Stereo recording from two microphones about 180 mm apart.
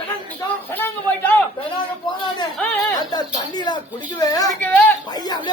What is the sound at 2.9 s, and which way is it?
Speech, 25° left (ahead or behind).